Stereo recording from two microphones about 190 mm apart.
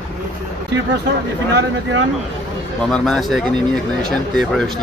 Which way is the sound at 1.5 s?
75° right (ahead or behind).